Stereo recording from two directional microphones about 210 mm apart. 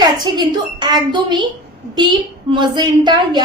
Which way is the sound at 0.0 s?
20° right (ahead or behind).